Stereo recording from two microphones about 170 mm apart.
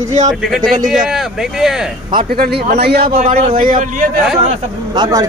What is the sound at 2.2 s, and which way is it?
A man's voice, 65° right (ahead or behind).